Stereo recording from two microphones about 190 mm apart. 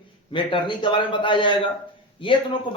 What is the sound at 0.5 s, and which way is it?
A man's voice, 25° left (ahead or behind).